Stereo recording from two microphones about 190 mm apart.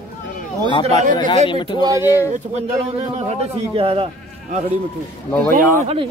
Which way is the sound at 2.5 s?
35° right (ahead or behind).